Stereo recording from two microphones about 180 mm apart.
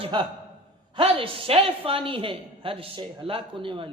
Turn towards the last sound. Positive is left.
turn(degrees=-30)  # may be behind; listen again after turning